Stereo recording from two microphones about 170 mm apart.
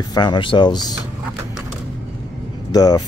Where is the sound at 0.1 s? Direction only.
25° left (ahead or behind).